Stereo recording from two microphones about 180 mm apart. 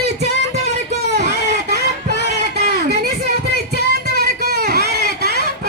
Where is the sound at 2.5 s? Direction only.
65° right (ahead or behind).